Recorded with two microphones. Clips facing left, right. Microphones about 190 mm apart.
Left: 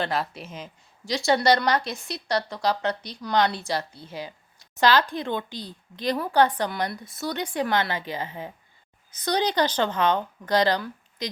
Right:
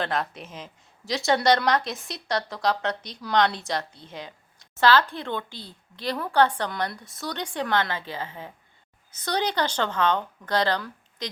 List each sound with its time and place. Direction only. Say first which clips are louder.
0.0 s speech: left 1 dB; 5° left (ahead or behind)
4.8 s speech: even; 15° left (ahead or behind)